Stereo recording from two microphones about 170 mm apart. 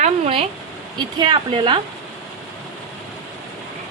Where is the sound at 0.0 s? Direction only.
35° right (ahead or behind).